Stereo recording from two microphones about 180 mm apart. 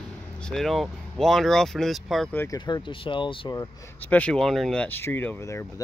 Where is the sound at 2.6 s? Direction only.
25° left (ahead or behind).